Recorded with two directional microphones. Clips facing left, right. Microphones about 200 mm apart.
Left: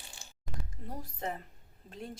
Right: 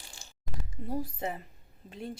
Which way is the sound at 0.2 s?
15° right (ahead or behind).